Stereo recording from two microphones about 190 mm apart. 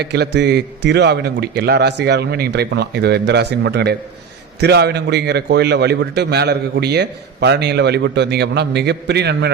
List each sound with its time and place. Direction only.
0.0 s a man's voice: 60° right (ahead or behind)